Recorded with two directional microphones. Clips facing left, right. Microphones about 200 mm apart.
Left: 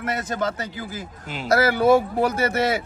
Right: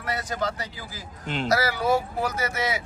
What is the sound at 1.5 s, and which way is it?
Speech, 55° left (ahead or behind).